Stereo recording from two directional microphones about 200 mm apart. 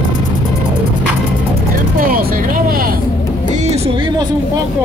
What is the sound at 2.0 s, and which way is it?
Vehicle, 45° right (ahead or behind).